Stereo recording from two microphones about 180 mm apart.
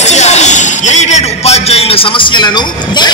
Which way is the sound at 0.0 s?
40° left (ahead or behind).